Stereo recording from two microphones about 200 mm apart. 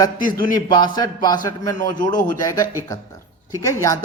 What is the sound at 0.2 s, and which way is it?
Speech, 45° left (ahead or behind).